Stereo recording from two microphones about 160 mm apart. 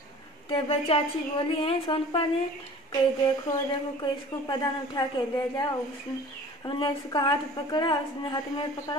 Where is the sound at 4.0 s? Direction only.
25° left (ahead or behind).